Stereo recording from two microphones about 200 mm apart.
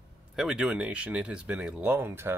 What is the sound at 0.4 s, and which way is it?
Speech, 5° right (ahead or behind).